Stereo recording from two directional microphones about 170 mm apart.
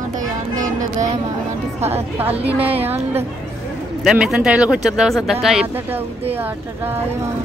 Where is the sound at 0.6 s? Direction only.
50° right (ahead or behind).